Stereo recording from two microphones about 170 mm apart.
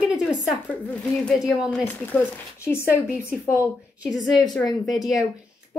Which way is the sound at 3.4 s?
15° left (ahead or behind).